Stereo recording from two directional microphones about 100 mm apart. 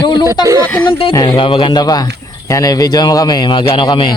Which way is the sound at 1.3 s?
60° left (ahead or behind).